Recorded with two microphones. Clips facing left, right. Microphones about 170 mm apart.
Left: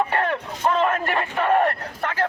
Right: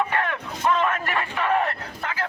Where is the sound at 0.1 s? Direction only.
35° left (ahead or behind).